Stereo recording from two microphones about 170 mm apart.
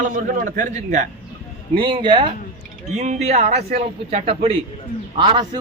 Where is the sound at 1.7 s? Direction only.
30° right (ahead or behind).